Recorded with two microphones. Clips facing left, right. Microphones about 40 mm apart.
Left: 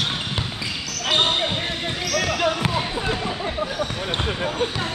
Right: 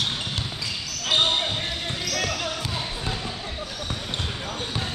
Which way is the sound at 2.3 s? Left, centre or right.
Left.